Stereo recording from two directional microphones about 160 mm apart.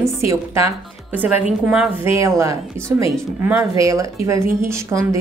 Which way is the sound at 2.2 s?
20° right (ahead or behind).